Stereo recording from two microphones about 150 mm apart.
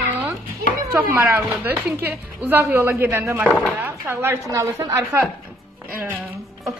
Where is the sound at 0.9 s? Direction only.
15° right (ahead or behind).